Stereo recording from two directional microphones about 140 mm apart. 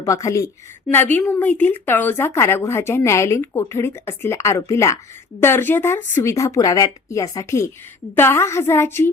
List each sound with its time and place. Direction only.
0.0 s a woman's voice: 25° left (ahead or behind)